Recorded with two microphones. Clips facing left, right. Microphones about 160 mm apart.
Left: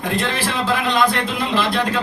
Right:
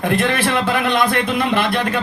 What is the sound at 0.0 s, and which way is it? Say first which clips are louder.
A man's voice: right 4 dB; 60° right (ahead or behind).